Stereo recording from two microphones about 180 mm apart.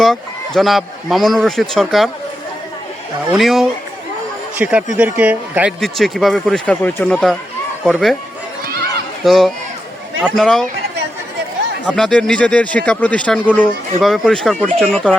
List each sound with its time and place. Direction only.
0.0 s speech: centre (ahead or behind)
3.3 s speech: centre (ahead or behind)
8.6 s chatter: 60° right (ahead or behind)
9.2 s speech: centre (ahead or behind)
11.9 s speech: centre (ahead or behind)